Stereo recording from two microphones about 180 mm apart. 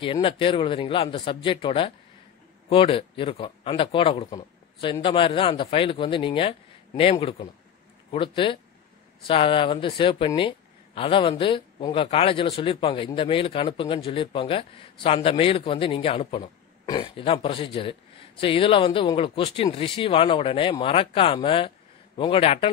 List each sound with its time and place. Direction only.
0.0 s speech: 30° left (ahead or behind)
4.4 s a sound: 30° left (ahead or behind)
5.0 s speech: 30° left (ahead or behind)